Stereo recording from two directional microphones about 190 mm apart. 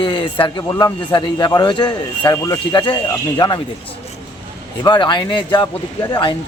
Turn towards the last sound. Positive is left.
turn(degrees=25)  # may be behind; listen again after turning